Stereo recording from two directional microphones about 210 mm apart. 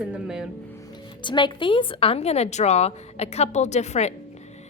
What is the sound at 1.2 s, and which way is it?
A woman's voice, 20° left (ahead or behind).